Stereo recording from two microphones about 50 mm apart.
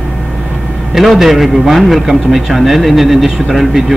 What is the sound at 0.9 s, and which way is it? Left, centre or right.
A man's voice, centre.